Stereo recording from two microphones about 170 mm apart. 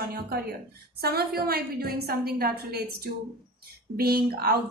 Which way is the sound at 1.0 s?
65° right (ahead or behind).